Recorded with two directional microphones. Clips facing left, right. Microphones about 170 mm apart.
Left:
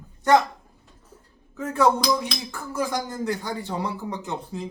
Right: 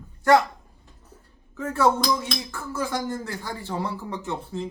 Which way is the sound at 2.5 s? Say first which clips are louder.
Left 2 dB; 15° left (ahead or behind).